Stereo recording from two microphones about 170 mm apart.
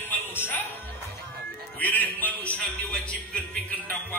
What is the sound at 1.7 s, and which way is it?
Speech, 10° left (ahead or behind).